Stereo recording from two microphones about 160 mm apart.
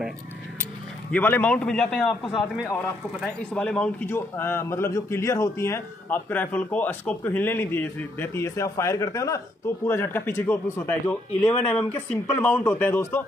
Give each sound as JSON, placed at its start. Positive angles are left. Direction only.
{"t": 1.1, "sound": "a man's voice", "side_deg": 10}